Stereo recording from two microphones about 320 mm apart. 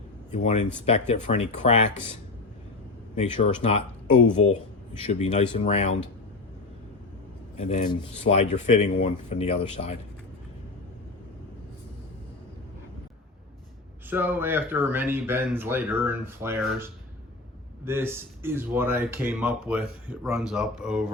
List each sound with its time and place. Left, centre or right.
0.3 s speech: left
3.2 s speech: left
5.0 s speech: left
7.5 s speech: left
14.1 s speech: centre